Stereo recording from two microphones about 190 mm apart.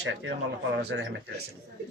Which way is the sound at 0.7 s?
70° right (ahead or behind).